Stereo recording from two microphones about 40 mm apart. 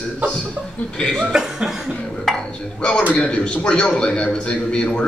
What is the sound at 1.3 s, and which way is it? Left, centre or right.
Chuckle, centre.